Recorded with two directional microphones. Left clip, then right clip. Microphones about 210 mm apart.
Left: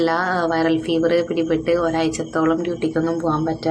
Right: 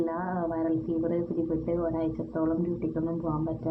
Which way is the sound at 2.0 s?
25° left (ahead or behind).